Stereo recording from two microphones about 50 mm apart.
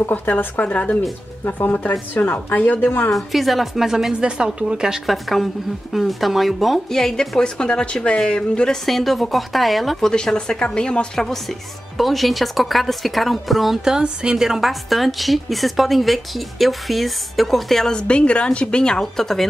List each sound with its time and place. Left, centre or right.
0.1 s a woman's voice: left
0.7 s a woman's voice: left
1.4 s a woman's voice: left
2.8 s a woman's voice: left
3.1 s a woman's voice: centre
4.2 s a woman's voice: centre
5.0 s a woman's voice: centre
12.0 s a woman's voice: centre
13.8 s a woman's voice: centre
17.9 s a woman's voice: left